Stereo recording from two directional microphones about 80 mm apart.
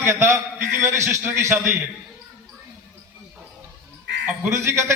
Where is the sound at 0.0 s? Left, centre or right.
Right.